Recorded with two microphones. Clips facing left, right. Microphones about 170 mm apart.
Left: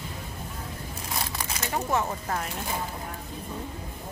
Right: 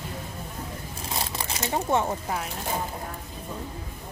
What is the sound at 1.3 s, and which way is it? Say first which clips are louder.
Speech: right 3 dB; 25° right (ahead or behind).